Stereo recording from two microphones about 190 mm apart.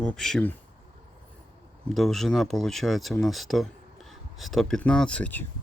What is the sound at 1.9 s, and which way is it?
Speech, centre (ahead or behind).